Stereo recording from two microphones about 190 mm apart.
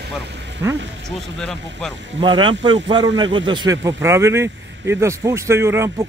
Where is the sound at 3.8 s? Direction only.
15° right (ahead or behind).